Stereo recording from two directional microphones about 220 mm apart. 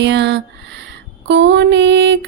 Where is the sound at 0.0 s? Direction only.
50° right (ahead or behind).